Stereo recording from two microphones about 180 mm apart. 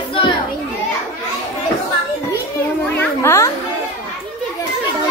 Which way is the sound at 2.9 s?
15° left (ahead or behind).